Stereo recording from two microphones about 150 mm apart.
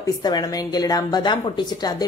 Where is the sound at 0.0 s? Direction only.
25° left (ahead or behind).